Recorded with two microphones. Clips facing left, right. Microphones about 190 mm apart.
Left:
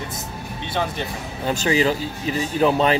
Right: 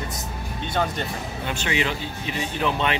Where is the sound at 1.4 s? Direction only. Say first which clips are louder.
Left 7 dB; 35° left (ahead or behind).